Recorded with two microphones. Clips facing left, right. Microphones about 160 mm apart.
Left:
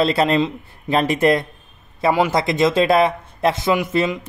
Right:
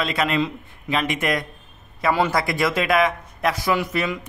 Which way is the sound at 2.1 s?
20° left (ahead or behind).